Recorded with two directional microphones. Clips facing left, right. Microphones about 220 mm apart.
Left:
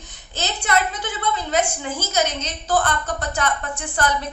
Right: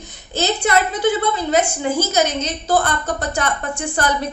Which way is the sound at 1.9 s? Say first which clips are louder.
Right 5 dB; 10° right (ahead or behind).